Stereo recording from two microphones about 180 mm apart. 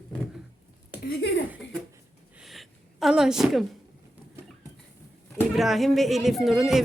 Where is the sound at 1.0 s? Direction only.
65° left (ahead or behind).